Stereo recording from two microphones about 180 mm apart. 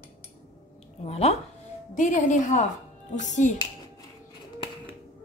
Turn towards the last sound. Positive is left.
turn(degrees=40)  # may be behind; listen again after turning